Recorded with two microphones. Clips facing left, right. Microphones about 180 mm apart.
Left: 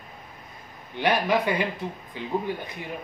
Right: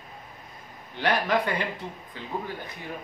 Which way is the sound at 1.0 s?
10° left (ahead or behind).